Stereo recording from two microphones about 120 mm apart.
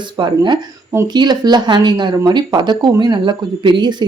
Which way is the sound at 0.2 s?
40° right (ahead or behind).